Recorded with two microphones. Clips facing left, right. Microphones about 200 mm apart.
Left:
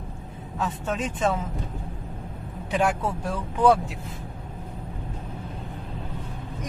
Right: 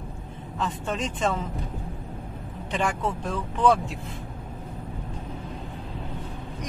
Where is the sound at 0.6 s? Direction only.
5° left (ahead or behind).